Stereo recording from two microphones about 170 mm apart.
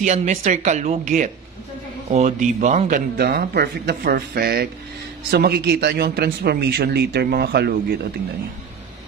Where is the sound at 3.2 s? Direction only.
65° right (ahead or behind).